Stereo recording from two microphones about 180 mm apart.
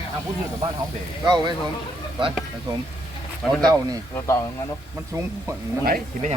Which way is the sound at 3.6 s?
20° right (ahead or behind).